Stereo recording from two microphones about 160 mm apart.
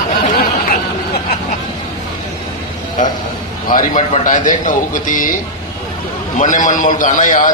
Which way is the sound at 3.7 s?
55° left (ahead or behind).